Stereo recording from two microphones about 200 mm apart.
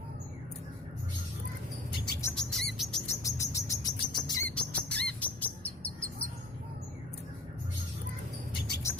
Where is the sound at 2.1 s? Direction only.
15° left (ahead or behind).